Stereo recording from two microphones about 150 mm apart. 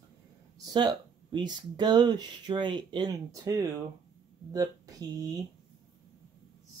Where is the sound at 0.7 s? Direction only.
30° right (ahead or behind).